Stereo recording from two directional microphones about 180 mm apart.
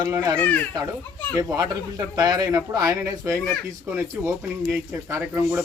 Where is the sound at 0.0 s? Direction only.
20° right (ahead or behind).